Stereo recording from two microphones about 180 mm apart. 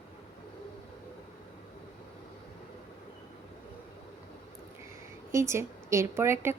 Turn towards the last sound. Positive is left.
turn(degrees=-15)  # may be behind; listen again after turning